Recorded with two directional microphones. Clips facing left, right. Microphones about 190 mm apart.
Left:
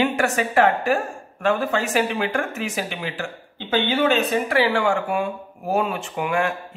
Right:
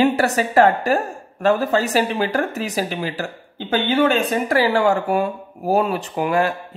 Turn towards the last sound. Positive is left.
turn(degrees=-35)  # may be behind; listen again after turning